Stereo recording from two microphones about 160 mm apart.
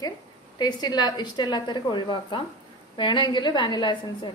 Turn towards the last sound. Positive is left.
turn(degrees=30)  # may be behind; listen again after turning